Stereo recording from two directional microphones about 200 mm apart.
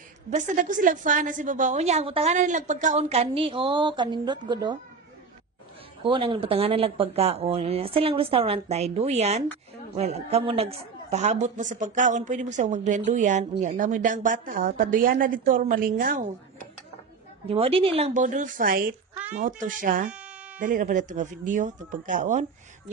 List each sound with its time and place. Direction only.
0.3 s speech: 40° right (ahead or behind); by 4.7 s 20° right (ahead or behind)
6.0 s speech: 25° right (ahead or behind); by 16.3 s 45° right (ahead or behind)
17.5 s speech: 30° right (ahead or behind)
20.1 s music: 5° right (ahead or behind)
20.5 s speech: 40° right (ahead or behind)